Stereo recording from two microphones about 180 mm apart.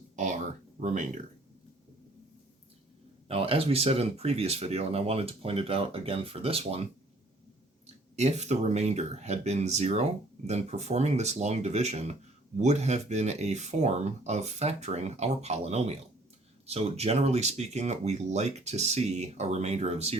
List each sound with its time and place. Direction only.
0.8 s speech: 45° right (ahead or behind)
3.2 s speech: 30° right (ahead or behind)
8.1 s speech: 40° right (ahead or behind)